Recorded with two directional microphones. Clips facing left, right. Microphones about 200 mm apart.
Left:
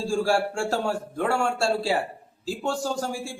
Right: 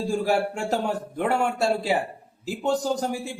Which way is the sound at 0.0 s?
20° right (ahead or behind).